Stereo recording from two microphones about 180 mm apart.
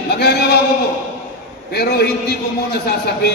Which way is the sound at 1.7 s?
60° left (ahead or behind).